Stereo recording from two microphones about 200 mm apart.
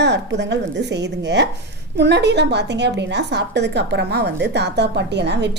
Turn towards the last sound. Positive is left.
turn(degrees=-60)  # may be behind; listen again after turning